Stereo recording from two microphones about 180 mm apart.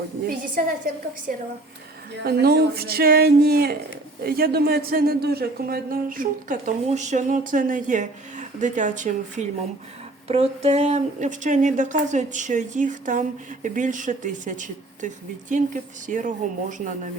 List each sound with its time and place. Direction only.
0.6 s a woman's voice: 50° right (ahead or behind)
2.2 s a woman's voice: 60° right (ahead or behind); by 17.1 s 45° right (ahead or behind)